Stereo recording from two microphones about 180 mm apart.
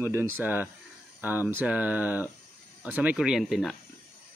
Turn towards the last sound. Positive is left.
turn(degrees=0)  # may be behind; listen again after turning